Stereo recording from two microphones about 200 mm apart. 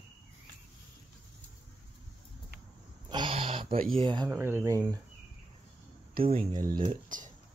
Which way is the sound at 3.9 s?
25° right (ahead or behind).